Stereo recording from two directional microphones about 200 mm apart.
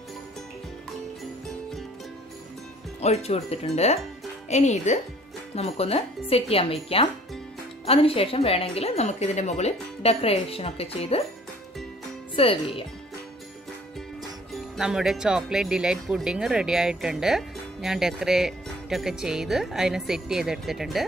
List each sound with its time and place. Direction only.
3.0 s a woman's voice: 30° left (ahead or behind)
12.4 s a woman's voice: 25° left (ahead or behind)
14.5 s speech: 5° right (ahead or behind)